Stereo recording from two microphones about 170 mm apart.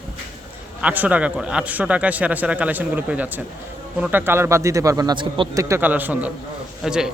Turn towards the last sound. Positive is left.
turn(degrees=-5)  # may be behind; listen again after turning